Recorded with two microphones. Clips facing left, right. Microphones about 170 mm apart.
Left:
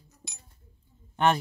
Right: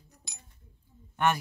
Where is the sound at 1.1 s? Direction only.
30° left (ahead or behind).